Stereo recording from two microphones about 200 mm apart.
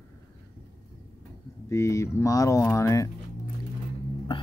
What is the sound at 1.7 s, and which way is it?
Speech, 15° left (ahead or behind).